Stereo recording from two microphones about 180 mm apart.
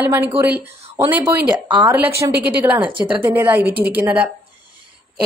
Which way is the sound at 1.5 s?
25° right (ahead or behind).